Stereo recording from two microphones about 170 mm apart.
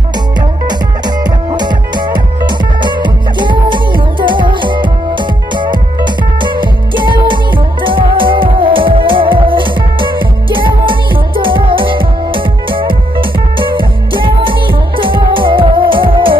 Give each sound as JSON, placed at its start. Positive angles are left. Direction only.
{"t": 0.7, "sound": "music", "side_deg": -25}